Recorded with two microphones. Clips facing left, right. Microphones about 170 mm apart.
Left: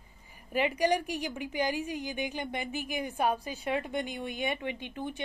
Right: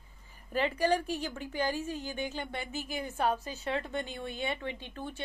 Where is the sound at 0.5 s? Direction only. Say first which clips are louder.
Left 1 dB; 15° left (ahead or behind).